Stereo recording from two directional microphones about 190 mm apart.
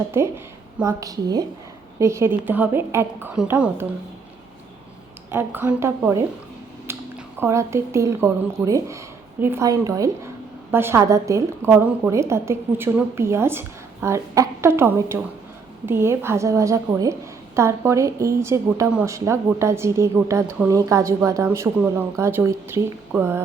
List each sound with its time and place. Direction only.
0.1 s speech: 15° right (ahead or behind)
5.3 s speech: 10° right (ahead or behind)
6.9 s a sound: 10° right (ahead or behind)
7.3 s speech: 15° right (ahead or behind)